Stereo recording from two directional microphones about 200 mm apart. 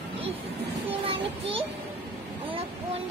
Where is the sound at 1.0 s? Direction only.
25° right (ahead or behind).